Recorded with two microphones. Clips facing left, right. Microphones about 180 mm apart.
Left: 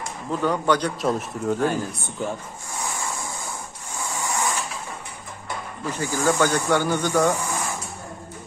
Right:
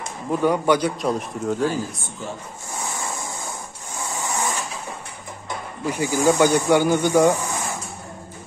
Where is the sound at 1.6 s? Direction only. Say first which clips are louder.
Even; 60° left (ahead or behind).